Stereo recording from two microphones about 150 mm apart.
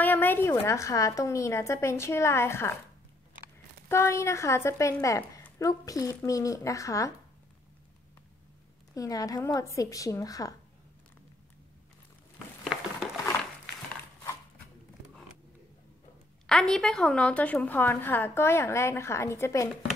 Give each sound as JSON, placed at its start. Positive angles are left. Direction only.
{"t": 0.0, "sound": "a woman's voice", "side_deg": 10}
{"t": 3.9, "sound": "a woman's voice", "side_deg": 20}
{"t": 8.9, "sound": "a woman's voice", "side_deg": 20}
{"t": 16.4, "sound": "a woman's voice", "side_deg": 5}